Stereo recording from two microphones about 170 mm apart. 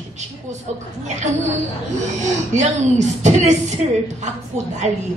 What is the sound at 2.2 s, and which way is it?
A woman's voice, 45° right (ahead or behind).